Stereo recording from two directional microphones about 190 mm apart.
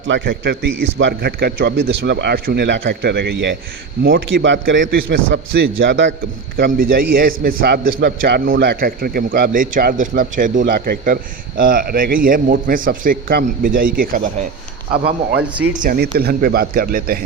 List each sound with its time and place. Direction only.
0.1 s a man's voice: 70° right (ahead or behind)
4.4 s a man's voice: 70° right (ahead or behind)
6.7 s a man's voice: 50° right (ahead or behind)
15.4 s speech: 5° right (ahead or behind)
15.8 s a man's voice: 50° right (ahead or behind)